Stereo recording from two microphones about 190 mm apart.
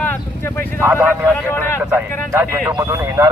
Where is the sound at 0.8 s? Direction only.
10° right (ahead or behind).